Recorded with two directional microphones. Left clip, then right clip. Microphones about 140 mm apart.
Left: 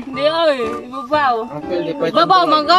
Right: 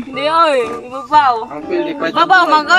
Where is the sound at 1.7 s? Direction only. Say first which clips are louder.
Right 2 dB; 40° left (ahead or behind).